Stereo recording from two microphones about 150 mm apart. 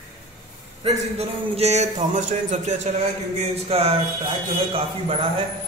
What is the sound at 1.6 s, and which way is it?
A man's voice, 45° right (ahead or behind).